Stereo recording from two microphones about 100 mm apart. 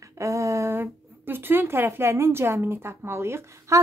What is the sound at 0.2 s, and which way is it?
Speech, 30° right (ahead or behind).